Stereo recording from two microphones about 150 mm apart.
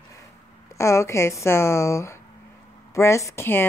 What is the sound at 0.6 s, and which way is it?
A woman's voice, 20° left (ahead or behind).